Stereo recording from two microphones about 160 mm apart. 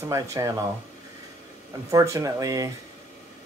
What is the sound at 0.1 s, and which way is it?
Speech, 20° right (ahead or behind).